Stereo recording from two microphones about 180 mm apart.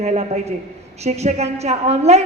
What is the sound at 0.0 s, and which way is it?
A woman's voice, 40° right (ahead or behind).